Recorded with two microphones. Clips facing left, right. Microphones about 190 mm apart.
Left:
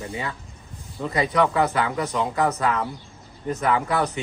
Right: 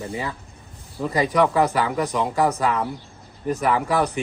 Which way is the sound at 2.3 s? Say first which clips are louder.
Right 2 dB; 10° right (ahead or behind).